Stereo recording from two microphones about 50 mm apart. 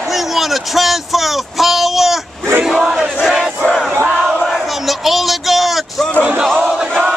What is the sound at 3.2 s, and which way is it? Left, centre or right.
Crowd, centre.